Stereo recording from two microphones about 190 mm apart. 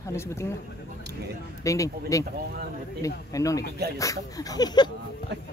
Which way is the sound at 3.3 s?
15° left (ahead or behind).